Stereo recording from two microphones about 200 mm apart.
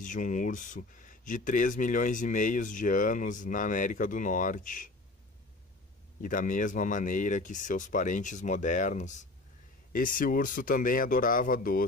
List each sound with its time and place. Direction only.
0.0 s speech: 40° left (ahead or behind)
6.2 s speech: 40° left (ahead or behind)